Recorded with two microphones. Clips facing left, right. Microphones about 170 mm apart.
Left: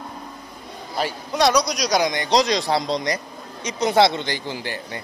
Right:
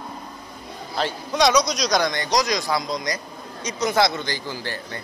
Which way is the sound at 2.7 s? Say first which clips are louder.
Left 3 dB; 30° left (ahead or behind).